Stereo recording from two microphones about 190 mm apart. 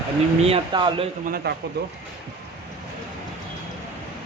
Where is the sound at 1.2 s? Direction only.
50° right (ahead or behind).